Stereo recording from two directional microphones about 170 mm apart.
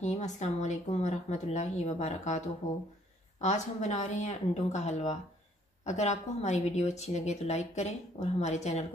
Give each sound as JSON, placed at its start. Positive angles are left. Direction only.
{"t": 0.0, "sound": "a woman's voice", "side_deg": 45}